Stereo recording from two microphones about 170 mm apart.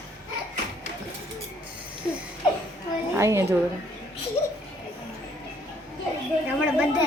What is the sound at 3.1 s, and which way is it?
Speech, 15° right (ahead or behind).